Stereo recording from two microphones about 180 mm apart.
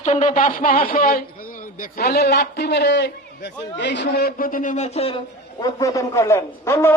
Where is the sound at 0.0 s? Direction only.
40° left (ahead or behind).